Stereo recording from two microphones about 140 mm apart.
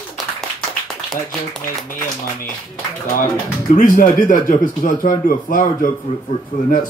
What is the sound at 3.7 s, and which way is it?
A man's voice, 70° left (ahead or behind).